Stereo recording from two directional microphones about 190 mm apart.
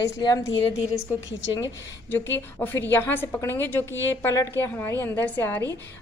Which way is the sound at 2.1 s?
10° left (ahead or behind).